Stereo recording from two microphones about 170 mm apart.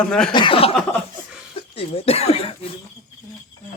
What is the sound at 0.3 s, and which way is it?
Speech, 30° left (ahead or behind).